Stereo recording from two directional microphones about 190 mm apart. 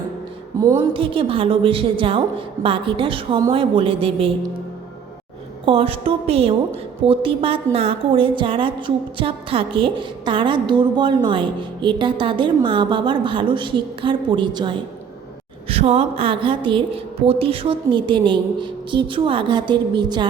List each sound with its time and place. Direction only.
0.9 s a woman's voice: 30° right (ahead or behind)
5.6 s a woman's voice: 30° right (ahead or behind)